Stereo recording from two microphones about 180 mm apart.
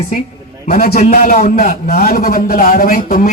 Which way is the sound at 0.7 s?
55° left (ahead or behind).